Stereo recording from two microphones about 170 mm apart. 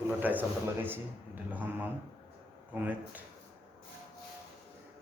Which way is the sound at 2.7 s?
10° right (ahead or behind).